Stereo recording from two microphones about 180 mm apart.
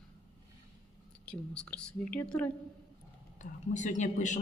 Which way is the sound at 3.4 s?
45° left (ahead or behind).